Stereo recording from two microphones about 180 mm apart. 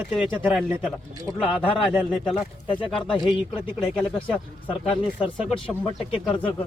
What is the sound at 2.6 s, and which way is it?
Speech, 25° left (ahead or behind).